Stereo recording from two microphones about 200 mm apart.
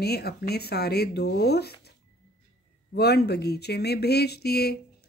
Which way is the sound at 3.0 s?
55° left (ahead or behind).